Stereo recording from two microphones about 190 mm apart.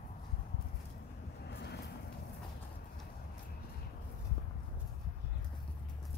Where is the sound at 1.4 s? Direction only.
60° left (ahead or behind).